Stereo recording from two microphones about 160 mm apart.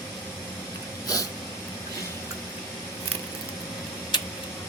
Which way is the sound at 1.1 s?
20° left (ahead or behind).